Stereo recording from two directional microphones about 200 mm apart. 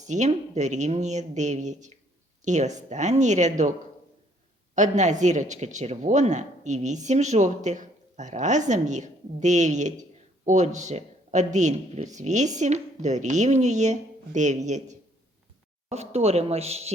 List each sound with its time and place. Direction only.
0.1 s speech: 35° right (ahead or behind)
4.7 s speech: 35° right (ahead or behind)